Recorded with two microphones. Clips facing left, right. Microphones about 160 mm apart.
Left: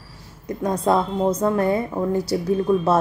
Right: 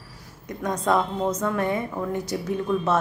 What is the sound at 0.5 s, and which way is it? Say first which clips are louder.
A woman's voice: left 4 dB; 30° left (ahead or behind).